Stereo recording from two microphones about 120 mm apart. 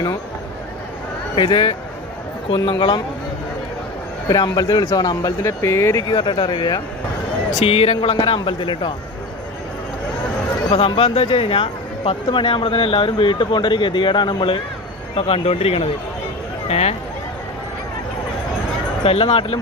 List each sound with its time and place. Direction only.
1.4 s speech: 45° left (ahead or behind)
4.3 s speech: 35° left (ahead or behind)
6.1 s speech: 40° left (ahead or behind)
7.5 s speech: 55° left (ahead or behind)
10.7 s speech: 50° left (ahead or behind)
15.1 s speech: 55° left (ahead or behind)
19.0 s speech: 55° left (ahead or behind)